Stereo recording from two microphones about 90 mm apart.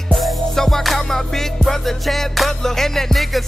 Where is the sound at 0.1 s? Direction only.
Centre (ahead or behind).